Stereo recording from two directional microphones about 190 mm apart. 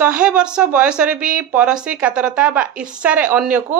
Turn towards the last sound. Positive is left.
turn(degrees=-5)  # may be behind; listen again after turning